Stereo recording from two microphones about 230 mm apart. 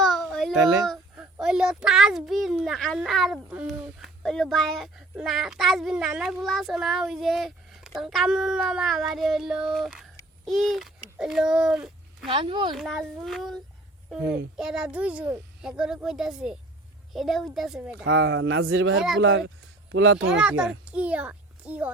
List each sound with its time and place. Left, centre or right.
0.0 s a sound: centre
0.5 s speech: right
0.9 s a child's voice: centre
12.3 s a woman's voice: right
12.7 s a child's voice: centre
18.0 s speech: right
20.4 s a child's voice: centre